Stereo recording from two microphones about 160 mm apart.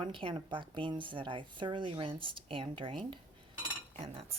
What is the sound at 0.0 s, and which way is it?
Speech, 35° right (ahead or behind).